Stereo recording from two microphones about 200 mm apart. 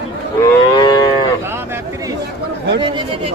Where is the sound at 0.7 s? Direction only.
20° left (ahead or behind).